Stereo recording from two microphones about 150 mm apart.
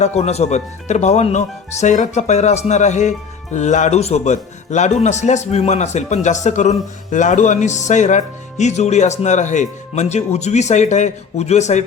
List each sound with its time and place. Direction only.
0.0 s a man's voice: 45° left (ahead or behind)